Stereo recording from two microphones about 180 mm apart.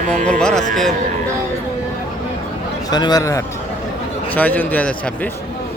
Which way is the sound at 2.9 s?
20° left (ahead or behind).